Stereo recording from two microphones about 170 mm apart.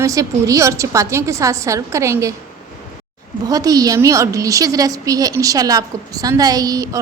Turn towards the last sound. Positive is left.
turn(degrees=-20)  # may be behind; listen again after turning